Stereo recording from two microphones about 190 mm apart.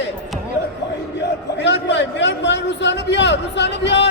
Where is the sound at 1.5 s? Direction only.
65° left (ahead or behind).